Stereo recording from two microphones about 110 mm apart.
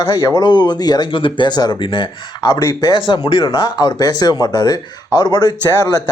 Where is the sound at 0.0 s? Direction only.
35° left (ahead or behind).